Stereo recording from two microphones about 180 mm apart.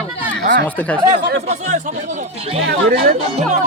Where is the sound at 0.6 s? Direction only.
10° left (ahead or behind).